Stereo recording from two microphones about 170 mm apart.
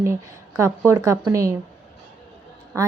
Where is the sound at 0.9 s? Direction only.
15° right (ahead or behind).